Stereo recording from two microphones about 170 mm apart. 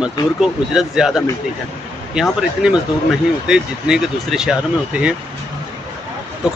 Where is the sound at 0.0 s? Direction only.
5° right (ahead or behind).